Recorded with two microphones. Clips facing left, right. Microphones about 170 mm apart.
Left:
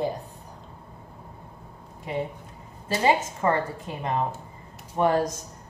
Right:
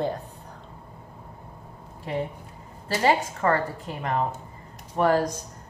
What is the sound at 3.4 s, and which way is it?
A woman's voice, 20° left (ahead or behind).